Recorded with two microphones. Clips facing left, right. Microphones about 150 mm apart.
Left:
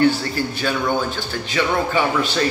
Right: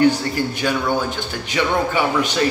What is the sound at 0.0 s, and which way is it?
Speech, 15° right (ahead or behind).